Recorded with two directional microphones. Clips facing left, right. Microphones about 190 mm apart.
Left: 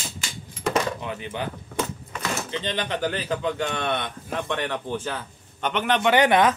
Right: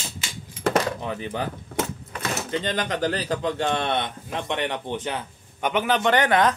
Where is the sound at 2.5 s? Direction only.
45° right (ahead or behind); by 6.1 s centre (ahead or behind).